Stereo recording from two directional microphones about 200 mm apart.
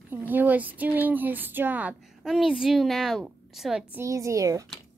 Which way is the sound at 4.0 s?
15° right (ahead or behind).